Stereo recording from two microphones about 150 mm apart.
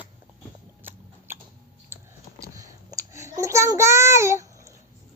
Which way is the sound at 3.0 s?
20° right (ahead or behind).